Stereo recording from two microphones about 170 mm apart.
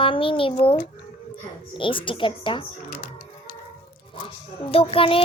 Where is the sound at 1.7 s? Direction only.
30° left (ahead or behind).